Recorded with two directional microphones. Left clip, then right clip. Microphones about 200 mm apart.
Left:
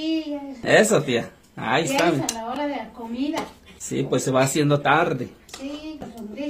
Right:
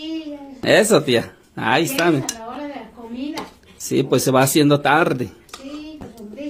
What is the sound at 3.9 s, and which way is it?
Speech, 50° right (ahead or behind).